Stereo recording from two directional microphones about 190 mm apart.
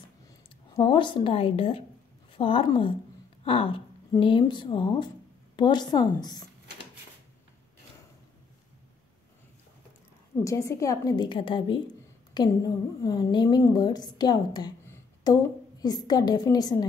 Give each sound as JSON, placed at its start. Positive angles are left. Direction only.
{"t": 0.7, "sound": "a woman's voice", "side_deg": 25}
{"t": 10.4, "sound": "a woman's voice", "side_deg": 15}